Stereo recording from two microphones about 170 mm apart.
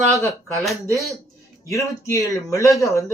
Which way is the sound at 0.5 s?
Centre (ahead or behind).